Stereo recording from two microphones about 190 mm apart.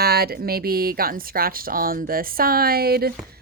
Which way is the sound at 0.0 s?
55° right (ahead or behind).